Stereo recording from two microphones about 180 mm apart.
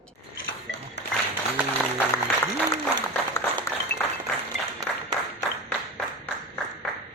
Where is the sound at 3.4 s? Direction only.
15° left (ahead or behind).